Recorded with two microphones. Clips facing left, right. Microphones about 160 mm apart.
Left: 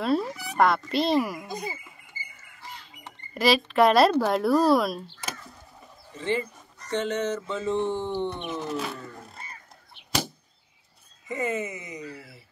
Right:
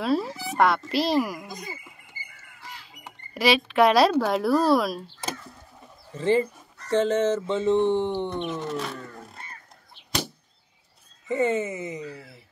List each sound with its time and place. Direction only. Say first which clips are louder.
0.0 s a child's voice: even; centre (ahead or behind)
0.3 s speech: right 3 dB; 30° right (ahead or behind)
0.6 s a child's voice: even; centre (ahead or behind)
3.0 s speech: even; centre (ahead or behind)
6.1 s speech: right 6 dB; 35° right (ahead or behind); by 8.4 s 15° right (ahead or behind)
8.4 s speech: right 2 dB; 5° left (ahead or behind)
11.2 s speech: right 5 dB; 30° right (ahead or behind)